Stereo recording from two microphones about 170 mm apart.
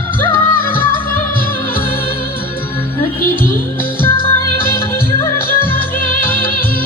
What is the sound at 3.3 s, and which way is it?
Music, 55° left (ahead or behind).